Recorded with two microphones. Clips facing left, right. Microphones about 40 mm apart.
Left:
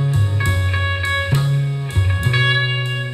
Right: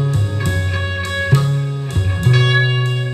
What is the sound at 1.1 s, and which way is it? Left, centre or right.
Music, left.